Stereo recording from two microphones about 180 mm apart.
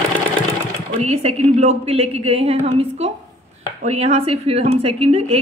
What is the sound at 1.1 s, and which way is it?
Speech, 35° right (ahead or behind).